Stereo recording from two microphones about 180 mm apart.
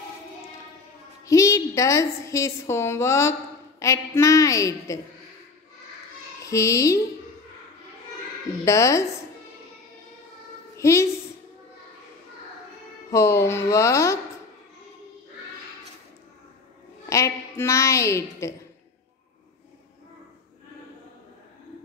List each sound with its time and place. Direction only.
1.2 s a woman's voice: 15° left (ahead or behind)
6.4 s child singing: 15° left (ahead or behind)
8.6 s a woman's voice: 15° left (ahead or behind)
10.8 s a woman's voice: 15° left (ahead or behind)
13.1 s a woman's voice: 15° left (ahead or behind)
17.1 s a woman's voice: 15° left (ahead or behind)